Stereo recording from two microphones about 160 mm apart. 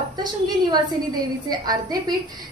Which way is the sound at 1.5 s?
25° right (ahead or behind).